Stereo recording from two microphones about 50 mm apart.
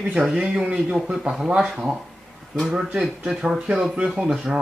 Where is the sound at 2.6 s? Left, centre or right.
Centre.